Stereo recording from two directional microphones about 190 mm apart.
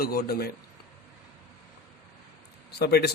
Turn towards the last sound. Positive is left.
turn(degrees=55)  # may be behind; listen again after turning